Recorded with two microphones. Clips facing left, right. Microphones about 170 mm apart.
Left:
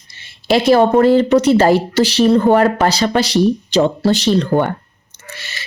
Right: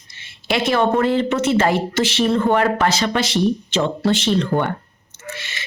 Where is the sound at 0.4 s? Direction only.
35° left (ahead or behind).